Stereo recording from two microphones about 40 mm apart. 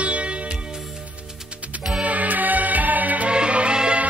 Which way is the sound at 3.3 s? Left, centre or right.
Right.